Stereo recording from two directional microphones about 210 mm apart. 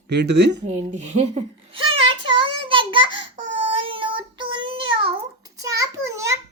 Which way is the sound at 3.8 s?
25° right (ahead or behind).